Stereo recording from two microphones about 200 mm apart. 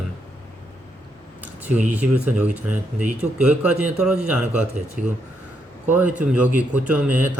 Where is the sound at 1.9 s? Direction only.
5° right (ahead or behind).